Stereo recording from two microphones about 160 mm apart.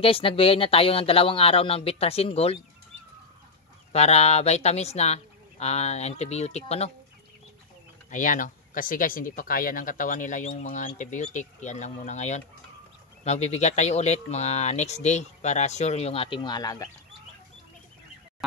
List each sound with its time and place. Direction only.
0.0 s speech: 35° left (ahead or behind)
3.9 s speech: 40° left (ahead or behind)
8.1 s speech: 55° left (ahead or behind); by 16.9 s 20° left (ahead or behind)